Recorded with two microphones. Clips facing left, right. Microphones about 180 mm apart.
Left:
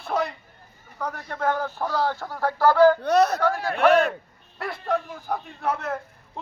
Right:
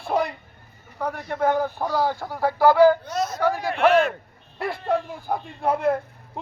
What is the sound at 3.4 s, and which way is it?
Speech, 10° right (ahead or behind).